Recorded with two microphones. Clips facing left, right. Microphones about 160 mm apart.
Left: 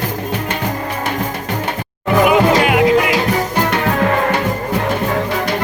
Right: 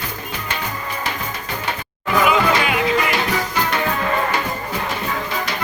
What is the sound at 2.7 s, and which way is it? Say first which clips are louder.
Music: left 7 dB; 65° left (ahead or behind).